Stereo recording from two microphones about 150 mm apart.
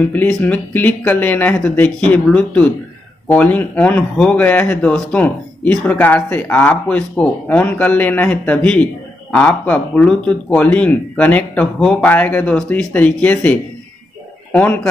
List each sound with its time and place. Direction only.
0.0 s a man's voice: 10° left (ahead or behind)